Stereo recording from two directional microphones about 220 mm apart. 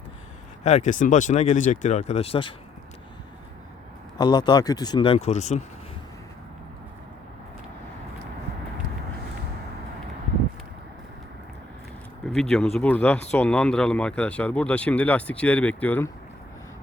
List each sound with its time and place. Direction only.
0.6 s speech: 30° left (ahead or behind)
4.2 s speech: 20° left (ahead or behind)
12.3 s speech: 5° left (ahead or behind)